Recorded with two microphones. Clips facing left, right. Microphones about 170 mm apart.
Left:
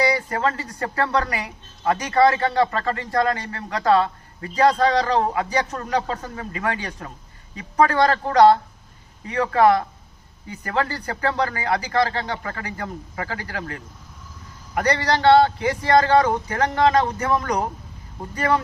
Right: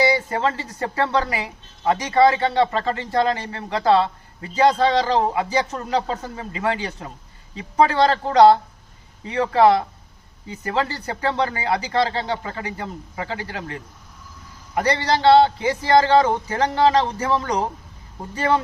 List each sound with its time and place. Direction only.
0.0 s speech: 25° right (ahead or behind)